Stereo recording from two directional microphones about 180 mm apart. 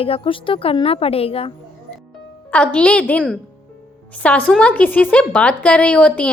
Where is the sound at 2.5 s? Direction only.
5° left (ahead or behind).